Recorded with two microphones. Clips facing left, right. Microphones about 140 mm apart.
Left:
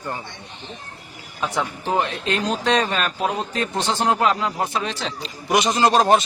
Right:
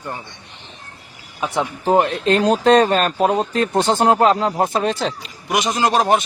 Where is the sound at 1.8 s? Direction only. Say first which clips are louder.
Right 9 dB; 40° right (ahead or behind).